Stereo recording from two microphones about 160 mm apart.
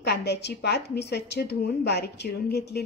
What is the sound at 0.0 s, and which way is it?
A woman's voice, 90° left.